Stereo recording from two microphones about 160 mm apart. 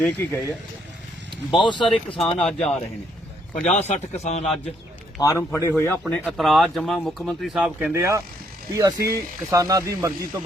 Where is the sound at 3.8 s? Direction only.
45° left (ahead or behind).